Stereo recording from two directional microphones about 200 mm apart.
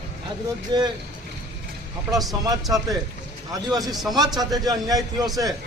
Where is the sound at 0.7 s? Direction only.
20° right (ahead or behind).